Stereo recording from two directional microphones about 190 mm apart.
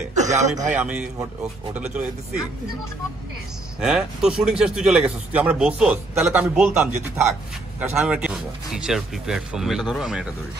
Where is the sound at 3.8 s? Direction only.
5° right (ahead or behind).